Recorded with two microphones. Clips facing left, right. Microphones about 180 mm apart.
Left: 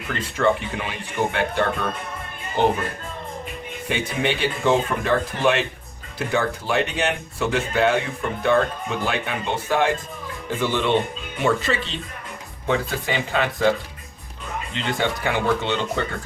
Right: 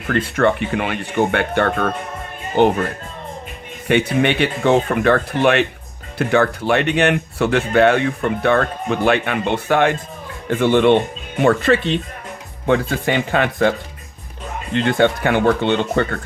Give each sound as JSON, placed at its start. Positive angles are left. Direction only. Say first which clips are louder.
{"t": 0.1, "sound": "speech", "louder": "right 5 dB", "side_deg": -60}
{"t": 3.8, "sound": "speech", "louder": "right 8 dB", "side_deg": -65}